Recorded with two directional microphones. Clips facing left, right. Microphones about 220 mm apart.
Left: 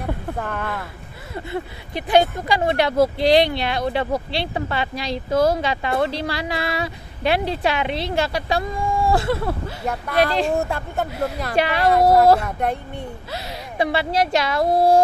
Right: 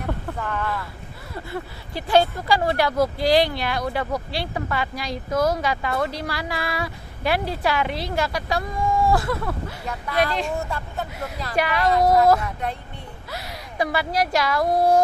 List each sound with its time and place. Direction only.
0.4 s speech: 50° left (ahead or behind)
1.3 s speech: 20° left (ahead or behind)
10.5 s a woman's voice: 50° left (ahead or behind)
11.5 s speech: 25° left (ahead or behind)
12.4 s speech: 50° left (ahead or behind)
13.3 s speech: 25° left (ahead or behind)